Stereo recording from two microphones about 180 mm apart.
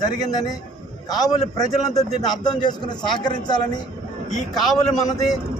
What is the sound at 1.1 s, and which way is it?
Speech, 20° left (ahead or behind).